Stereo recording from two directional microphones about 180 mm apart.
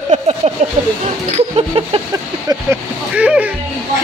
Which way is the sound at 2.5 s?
25° right (ahead or behind).